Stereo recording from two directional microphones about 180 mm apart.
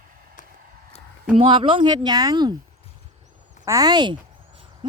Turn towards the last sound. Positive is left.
turn(degrees=-25)  # may be behind; listen again after turning